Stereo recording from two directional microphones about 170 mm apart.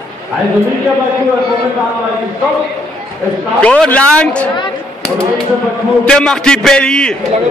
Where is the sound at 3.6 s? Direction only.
5° left (ahead or behind).